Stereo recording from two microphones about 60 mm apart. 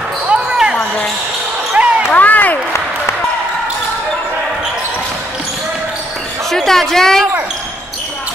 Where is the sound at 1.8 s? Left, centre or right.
Centre.